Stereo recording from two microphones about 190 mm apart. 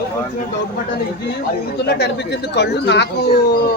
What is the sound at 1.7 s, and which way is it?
Speech, 60° left (ahead or behind).